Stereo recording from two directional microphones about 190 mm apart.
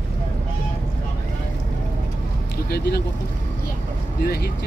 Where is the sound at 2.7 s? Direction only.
55° left (ahead or behind).